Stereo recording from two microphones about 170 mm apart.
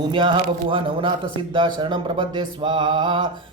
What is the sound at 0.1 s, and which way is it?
A man's voice, 30° right (ahead or behind).